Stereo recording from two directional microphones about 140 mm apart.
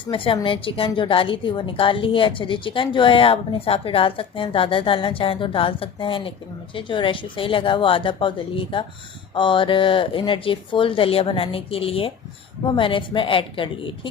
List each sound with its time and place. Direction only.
0.0 s a woman's voice: 40° left (ahead or behind)